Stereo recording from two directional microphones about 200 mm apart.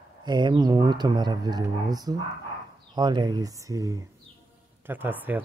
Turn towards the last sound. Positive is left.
turn(degrees=-10)  # may be behind; listen again after turning